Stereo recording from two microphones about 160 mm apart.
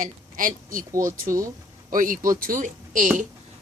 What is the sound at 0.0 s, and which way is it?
A woman's voice, 60° right (ahead or behind).